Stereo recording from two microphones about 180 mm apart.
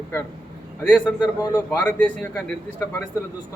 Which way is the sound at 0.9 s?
10° left (ahead or behind).